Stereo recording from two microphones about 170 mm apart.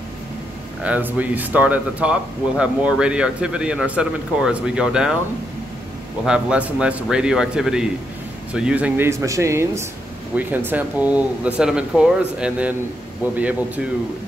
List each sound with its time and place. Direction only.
0.8 s speech: 10° right (ahead or behind)
6.2 s speech: 5° right (ahead or behind)